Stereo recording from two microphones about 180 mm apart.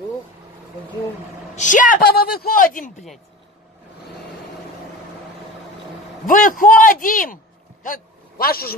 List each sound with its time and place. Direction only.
1.5 s speech: 45° left (ahead or behind)
6.2 s a man's voice: 50° left (ahead or behind)